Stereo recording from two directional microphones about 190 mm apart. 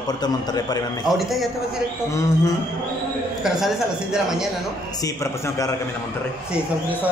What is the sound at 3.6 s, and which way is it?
Speech, centre (ahead or behind).